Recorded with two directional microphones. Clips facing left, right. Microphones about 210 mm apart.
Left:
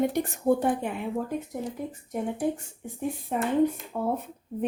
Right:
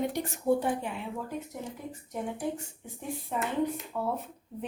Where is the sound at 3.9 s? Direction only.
45° left (ahead or behind).